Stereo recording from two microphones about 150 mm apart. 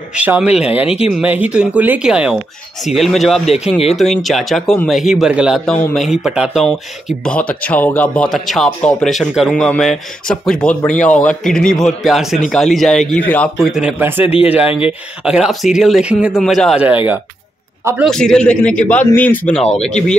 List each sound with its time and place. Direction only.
0.1 s speech: 10° right (ahead or behind)
0.7 s speech: 40° left (ahead or behind)
1.1 s a man's voice: 10° right (ahead or behind); by 13.7 s 10° left (ahead or behind)
13.7 s speech: 5° right (ahead or behind)
14.2 s speech: 40° left (ahead or behind)
14.5 s speech: 5° right (ahead or behind)
16.8 s speech: 10° right (ahead or behind)
18.0 s a man's voice: 5° left (ahead or behind)